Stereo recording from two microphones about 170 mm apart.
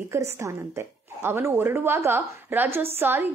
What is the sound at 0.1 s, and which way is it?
A woman's voice, 15° right (ahead or behind).